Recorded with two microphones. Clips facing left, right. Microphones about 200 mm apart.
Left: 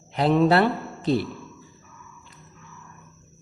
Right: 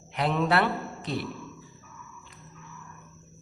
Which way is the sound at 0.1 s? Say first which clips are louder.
Left 7 dB; 30° left (ahead or behind).